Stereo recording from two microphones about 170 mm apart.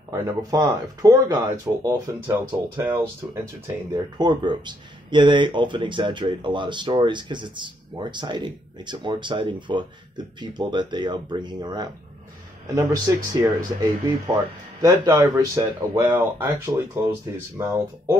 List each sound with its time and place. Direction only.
0.1 s speech: 20° right (ahead or behind)
15.1 s speech: 10° right (ahead or behind)